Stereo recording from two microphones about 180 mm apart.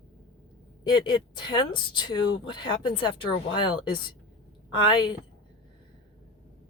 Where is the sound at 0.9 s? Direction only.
25° left (ahead or behind).